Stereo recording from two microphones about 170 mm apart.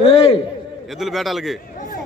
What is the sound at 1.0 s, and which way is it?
Speech, centre (ahead or behind).